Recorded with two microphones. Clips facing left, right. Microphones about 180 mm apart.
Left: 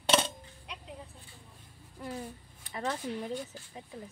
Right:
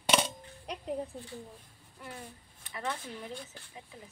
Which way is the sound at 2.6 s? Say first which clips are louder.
Left 3 dB; 35° left (ahead or behind).